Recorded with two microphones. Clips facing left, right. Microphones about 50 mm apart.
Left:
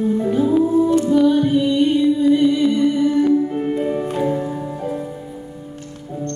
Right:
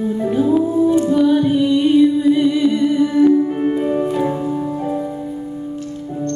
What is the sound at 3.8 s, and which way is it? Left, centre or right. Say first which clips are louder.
Music: right 3 dB; centre.